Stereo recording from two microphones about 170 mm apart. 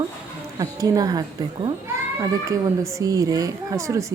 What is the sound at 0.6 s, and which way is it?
Speech, 20° right (ahead or behind).